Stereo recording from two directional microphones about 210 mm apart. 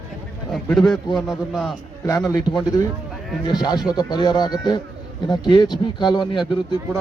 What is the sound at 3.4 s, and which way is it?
Speech, 20° left (ahead or behind).